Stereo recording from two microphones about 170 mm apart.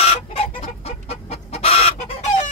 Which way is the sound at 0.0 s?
35° left (ahead or behind).